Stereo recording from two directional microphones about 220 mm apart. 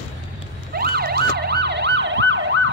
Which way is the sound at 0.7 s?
45° right (ahead or behind).